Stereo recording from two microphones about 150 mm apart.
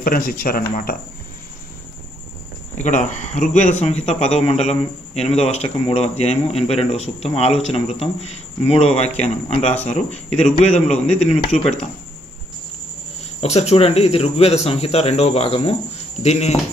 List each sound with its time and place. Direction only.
0.0 s speech: 70° left (ahead or behind)
2.8 s a man's voice: 55° left (ahead or behind)
13.4 s a man's voice: 45° left (ahead or behind)